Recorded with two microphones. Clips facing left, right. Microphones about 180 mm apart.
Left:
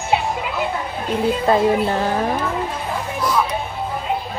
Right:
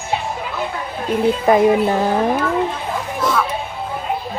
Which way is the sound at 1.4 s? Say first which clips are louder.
Right 4 dB; 15° right (ahead or behind).